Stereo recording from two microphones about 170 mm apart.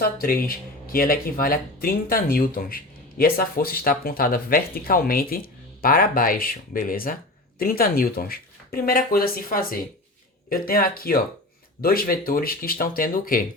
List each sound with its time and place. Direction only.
0.0 s speech: 60° left (ahead or behind)